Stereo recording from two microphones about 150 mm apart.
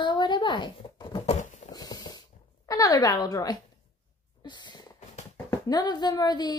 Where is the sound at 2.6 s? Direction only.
20° left (ahead or behind).